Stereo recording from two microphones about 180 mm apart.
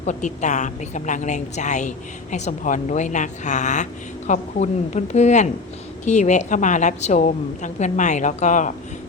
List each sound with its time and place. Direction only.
0.0 s a woman's voice: 40° left (ahead or behind)